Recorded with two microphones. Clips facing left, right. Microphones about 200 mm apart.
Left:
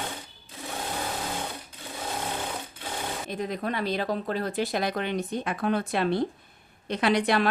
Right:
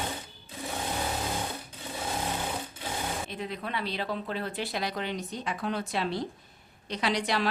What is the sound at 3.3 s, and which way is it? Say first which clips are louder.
A woman's voice: left 5 dB; 45° left (ahead or behind).